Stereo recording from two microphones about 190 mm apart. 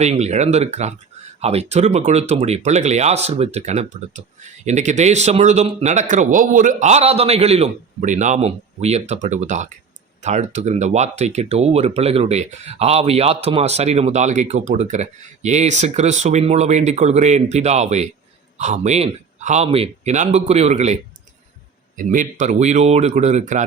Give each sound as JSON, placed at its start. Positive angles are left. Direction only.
{"t": 0.0, "sound": "speech", "side_deg": -35}